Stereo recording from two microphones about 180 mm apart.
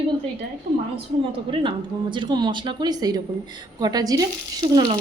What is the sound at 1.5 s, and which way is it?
Speech, 25° right (ahead or behind).